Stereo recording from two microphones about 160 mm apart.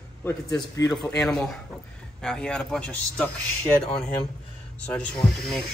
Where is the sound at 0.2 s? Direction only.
20° left (ahead or behind).